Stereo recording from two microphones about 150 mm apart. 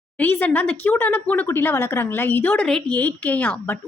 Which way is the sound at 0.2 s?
15° left (ahead or behind).